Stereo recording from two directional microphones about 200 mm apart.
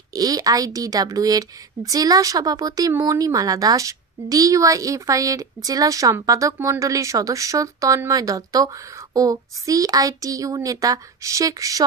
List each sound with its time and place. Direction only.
0.1 s a woman's voice: 20° right (ahead or behind)